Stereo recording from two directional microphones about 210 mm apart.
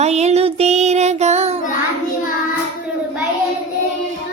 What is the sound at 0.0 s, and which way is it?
Child singing, 30° right (ahead or behind).